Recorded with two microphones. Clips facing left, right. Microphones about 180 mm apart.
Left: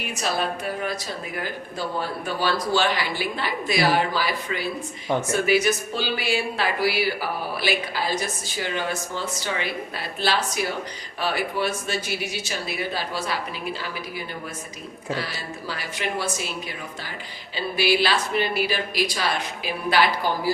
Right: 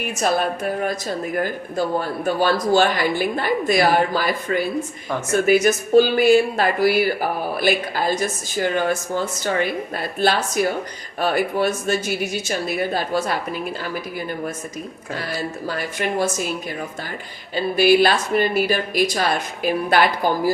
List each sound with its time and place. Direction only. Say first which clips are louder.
0.2 s speech: right 6 dB; 50° right (ahead or behind)
15.1 s speech: right 3 dB; 45° right (ahead or behind)
17.5 s speech: right 7 dB; 50° right (ahead or behind)